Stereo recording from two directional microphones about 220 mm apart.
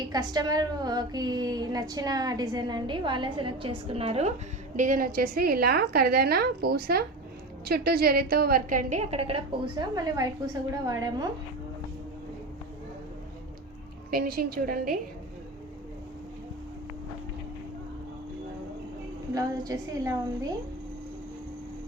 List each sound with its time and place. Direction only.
0.1 s a woman's voice: 20° right (ahead or behind)
4.8 s a woman's voice: 40° right (ahead or behind); by 11.3 s 15° right (ahead or behind)
14.1 s a woman's voice: 40° right (ahead or behind)
19.3 s a woman's voice: 15° right (ahead or behind)